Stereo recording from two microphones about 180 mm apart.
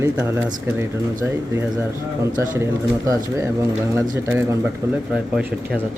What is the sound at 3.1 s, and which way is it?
Speech, 15° right (ahead or behind).